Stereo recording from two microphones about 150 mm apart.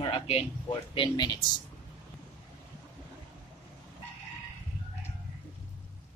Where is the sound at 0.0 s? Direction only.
40° left (ahead or behind).